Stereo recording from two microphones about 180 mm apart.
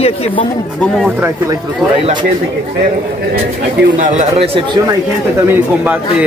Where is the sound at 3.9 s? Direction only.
45° right (ahead or behind).